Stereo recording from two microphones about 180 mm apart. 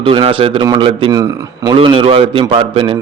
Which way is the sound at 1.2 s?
20° right (ahead or behind).